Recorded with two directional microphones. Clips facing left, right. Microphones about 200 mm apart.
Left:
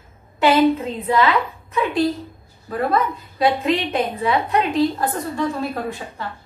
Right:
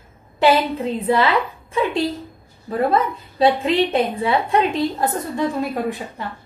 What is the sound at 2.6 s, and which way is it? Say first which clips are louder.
A woman's voice: right 2 dB; 30° right (ahead or behind).